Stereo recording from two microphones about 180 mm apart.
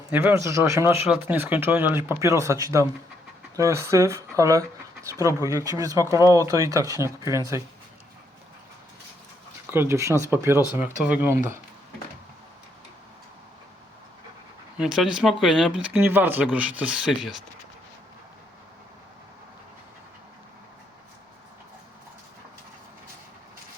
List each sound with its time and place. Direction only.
0.1 s speech: 10° right (ahead or behind)
9.6 s speech: 10° right (ahead or behind)
14.8 s speech: 5° right (ahead or behind)